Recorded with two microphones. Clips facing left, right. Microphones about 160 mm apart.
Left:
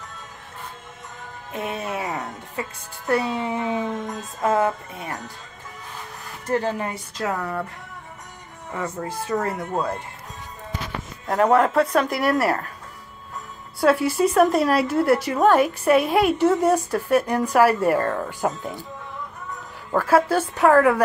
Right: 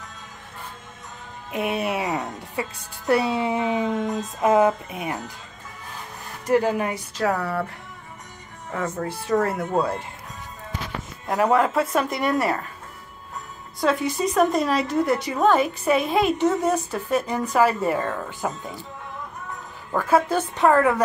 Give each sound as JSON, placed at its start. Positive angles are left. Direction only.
{"t": 1.5, "sound": "music", "side_deg": -15}
{"t": 3.1, "sound": "speech", "side_deg": -15}
{"t": 6.4, "sound": "speech", "side_deg": -10}
{"t": 9.3, "sound": "speech", "side_deg": -5}
{"t": 11.2, "sound": "speech", "side_deg": -5}
{"t": 13.7, "sound": "a woman's voice", "side_deg": 5}
{"t": 19.9, "sound": "speech", "side_deg": 5}